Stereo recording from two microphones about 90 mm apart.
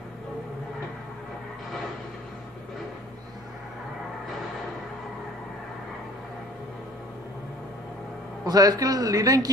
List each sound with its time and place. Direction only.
8.5 s a man's voice: 45° right (ahead or behind)